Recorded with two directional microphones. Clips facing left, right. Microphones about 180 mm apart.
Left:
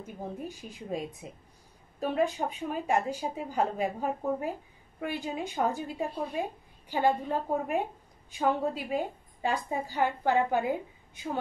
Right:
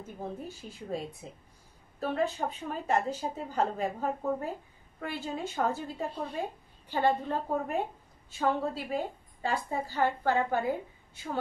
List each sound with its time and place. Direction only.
0.0 s speech: 15° left (ahead or behind)